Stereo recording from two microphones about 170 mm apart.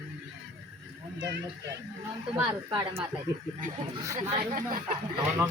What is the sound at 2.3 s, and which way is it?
Speech, 20° right (ahead or behind).